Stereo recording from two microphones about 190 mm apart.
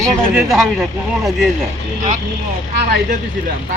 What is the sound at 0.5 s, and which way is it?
Speech, centre (ahead or behind).